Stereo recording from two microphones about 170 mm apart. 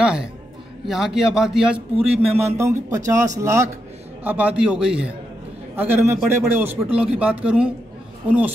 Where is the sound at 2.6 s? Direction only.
15° right (ahead or behind).